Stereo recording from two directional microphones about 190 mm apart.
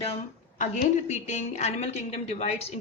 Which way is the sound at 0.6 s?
40° left (ahead or behind).